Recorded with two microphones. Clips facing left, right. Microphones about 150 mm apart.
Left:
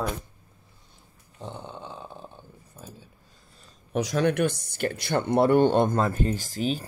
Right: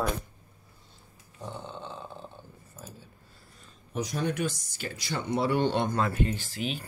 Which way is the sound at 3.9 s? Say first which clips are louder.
Left 7 dB; 80° left.